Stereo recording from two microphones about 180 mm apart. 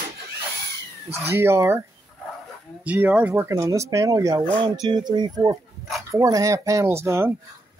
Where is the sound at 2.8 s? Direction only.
10° right (ahead or behind).